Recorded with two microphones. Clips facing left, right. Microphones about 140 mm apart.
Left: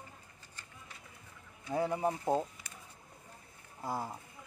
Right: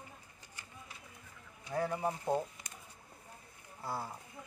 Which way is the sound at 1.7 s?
20° left (ahead or behind).